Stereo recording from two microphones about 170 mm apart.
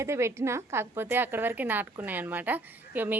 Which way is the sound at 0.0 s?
15° right (ahead or behind).